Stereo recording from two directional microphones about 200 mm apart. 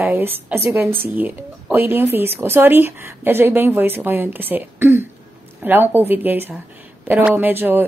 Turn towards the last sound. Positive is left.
turn(degrees=-10)  # may be behind; listen again after turning